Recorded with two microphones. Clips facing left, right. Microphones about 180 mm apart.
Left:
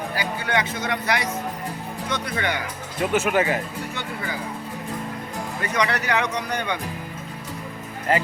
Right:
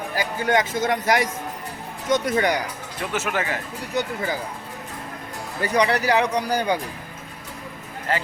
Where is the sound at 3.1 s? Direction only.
15° left (ahead or behind).